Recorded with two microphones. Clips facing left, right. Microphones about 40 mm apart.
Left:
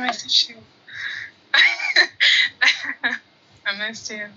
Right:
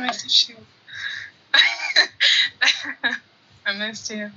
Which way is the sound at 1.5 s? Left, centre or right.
Left.